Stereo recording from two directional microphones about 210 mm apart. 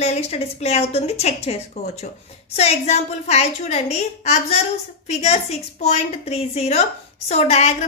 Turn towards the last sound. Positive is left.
turn(degrees=30)  # may be behind; listen again after turning